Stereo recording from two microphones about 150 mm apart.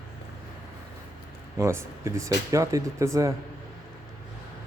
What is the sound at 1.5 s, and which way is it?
Speech, 20° right (ahead or behind).